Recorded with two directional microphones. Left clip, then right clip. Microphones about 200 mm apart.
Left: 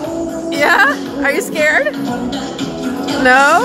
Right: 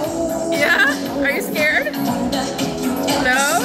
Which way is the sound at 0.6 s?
40° left (ahead or behind).